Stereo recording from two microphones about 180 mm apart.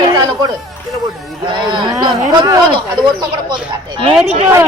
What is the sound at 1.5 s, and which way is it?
Speech, 25° right (ahead or behind).